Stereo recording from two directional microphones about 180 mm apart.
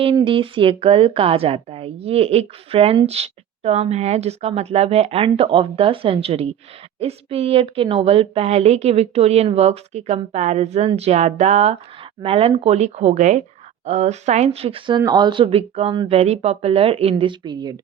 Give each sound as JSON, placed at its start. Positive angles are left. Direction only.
{"t": 0.0, "sound": "a woman's voice", "side_deg": -30}